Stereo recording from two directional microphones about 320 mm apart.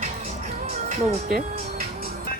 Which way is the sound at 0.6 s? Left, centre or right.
Centre.